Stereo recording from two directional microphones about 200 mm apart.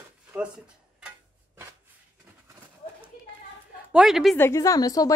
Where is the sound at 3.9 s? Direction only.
Centre (ahead or behind).